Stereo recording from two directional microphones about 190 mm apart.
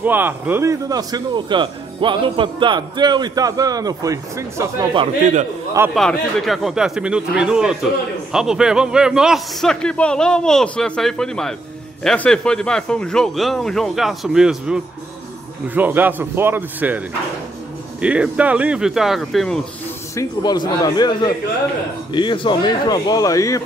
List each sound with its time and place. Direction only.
0.0 s a man's voice: 10° right (ahead or behind)
5.9 s a man's voice: centre (ahead or behind)
18.0 s a man's voice: 5° right (ahead or behind)
20.2 s speech: 20° left (ahead or behind)